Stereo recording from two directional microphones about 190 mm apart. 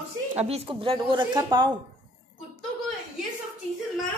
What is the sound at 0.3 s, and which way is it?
A woman's voice, 35° right (ahead or behind).